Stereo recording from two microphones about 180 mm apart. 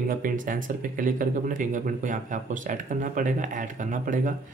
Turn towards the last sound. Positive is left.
turn(degrees=-45)  # may be behind; listen again after turning